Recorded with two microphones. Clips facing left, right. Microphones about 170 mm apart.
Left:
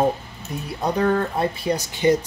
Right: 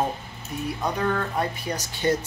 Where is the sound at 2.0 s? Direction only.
15° left (ahead or behind).